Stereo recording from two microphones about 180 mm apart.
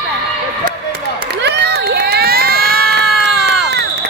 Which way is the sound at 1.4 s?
70° right (ahead or behind).